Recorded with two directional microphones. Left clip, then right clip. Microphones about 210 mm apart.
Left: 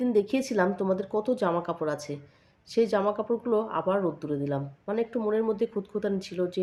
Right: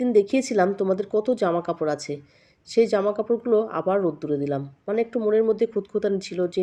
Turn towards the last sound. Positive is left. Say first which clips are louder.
# right 5 dB
turn(degrees=-15)  # may be behind; listen again after turning